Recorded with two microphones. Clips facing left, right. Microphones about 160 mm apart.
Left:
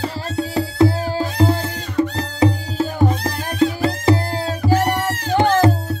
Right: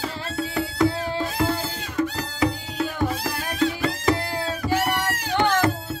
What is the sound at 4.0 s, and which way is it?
Music, 35° left (ahead or behind).